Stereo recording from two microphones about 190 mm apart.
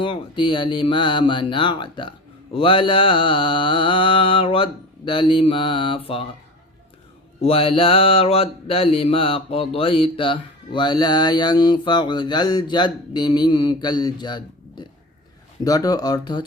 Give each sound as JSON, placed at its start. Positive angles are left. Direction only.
{"t": 0.0, "sound": "mantra", "side_deg": 25}
{"t": 7.4, "sound": "mantra", "side_deg": 30}